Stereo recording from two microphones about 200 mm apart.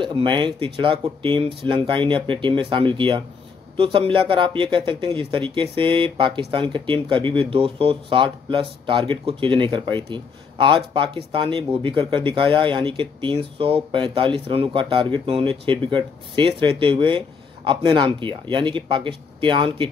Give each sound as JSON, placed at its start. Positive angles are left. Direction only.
{"t": 0.0, "sound": "speech", "side_deg": -25}